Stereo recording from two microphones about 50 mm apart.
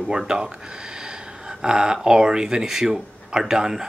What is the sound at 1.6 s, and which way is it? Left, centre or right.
Speech, centre.